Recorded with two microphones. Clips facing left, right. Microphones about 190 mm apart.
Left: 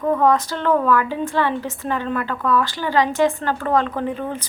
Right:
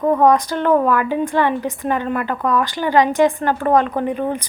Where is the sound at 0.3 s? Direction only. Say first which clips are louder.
Right 3 dB; 15° right (ahead or behind).